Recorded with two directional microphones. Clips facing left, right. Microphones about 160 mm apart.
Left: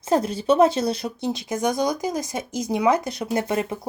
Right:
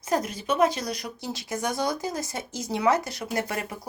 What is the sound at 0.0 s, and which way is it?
Speech, 30° left (ahead or behind).